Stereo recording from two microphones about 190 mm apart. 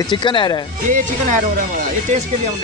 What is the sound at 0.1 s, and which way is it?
Speech, 25° left (ahead or behind).